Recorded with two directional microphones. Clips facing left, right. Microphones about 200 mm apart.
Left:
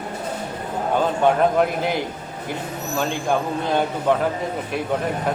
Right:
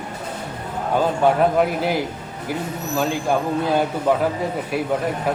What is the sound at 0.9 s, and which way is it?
Speech, 5° right (ahead or behind).